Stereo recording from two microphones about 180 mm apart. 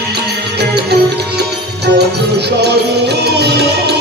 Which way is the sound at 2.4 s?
65° right (ahead or behind).